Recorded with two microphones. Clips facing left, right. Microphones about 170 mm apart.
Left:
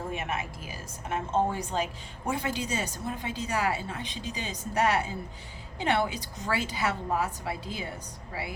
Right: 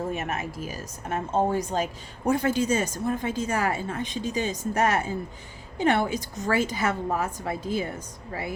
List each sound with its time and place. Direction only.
0.1 s speech: 40° right (ahead or behind)